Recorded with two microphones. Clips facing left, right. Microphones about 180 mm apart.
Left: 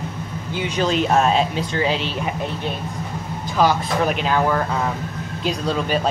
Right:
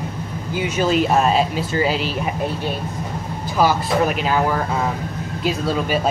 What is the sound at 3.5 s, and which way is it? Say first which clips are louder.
Speech: right 1 dB; 5° right (ahead or behind).